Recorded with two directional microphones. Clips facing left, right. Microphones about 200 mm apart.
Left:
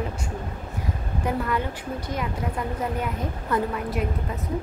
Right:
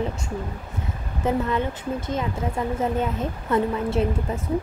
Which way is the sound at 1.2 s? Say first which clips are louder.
Right 3 dB; 25° right (ahead or behind).